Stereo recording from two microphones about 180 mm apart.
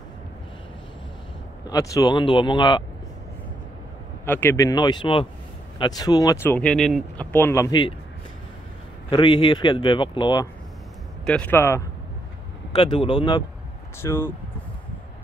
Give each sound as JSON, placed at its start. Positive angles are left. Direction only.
{"t": 1.6, "sound": "speech", "side_deg": 20}
{"t": 4.3, "sound": "speech", "side_deg": 10}
{"t": 7.3, "sound": "speech", "side_deg": 15}
{"t": 9.1, "sound": "speech", "side_deg": 30}
{"t": 11.2, "sound": "speech", "side_deg": 5}
{"t": 12.7, "sound": "speech", "side_deg": 25}
{"t": 13.9, "sound": "speech", "side_deg": 15}